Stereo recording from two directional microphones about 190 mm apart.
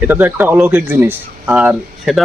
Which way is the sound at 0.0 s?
10° right (ahead or behind).